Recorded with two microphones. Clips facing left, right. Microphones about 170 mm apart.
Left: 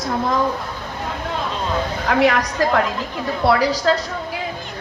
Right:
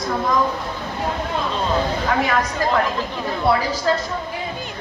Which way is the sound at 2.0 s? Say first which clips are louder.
Left 9 dB; 70° left (ahead or behind).